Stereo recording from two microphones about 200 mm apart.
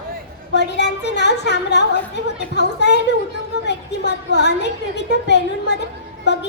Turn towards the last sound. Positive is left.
turn(degrees=60)  # may be behind; listen again after turning